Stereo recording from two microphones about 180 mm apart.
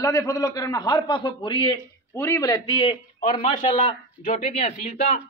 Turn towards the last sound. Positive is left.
turn(degrees=35)  # may be behind; listen again after turning